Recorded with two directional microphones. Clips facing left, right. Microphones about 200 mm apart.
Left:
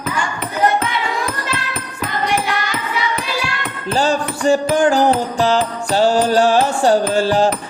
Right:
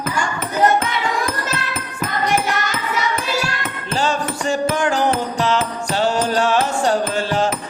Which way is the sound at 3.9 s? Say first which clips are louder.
Left 3 dB; 35° left (ahead or behind).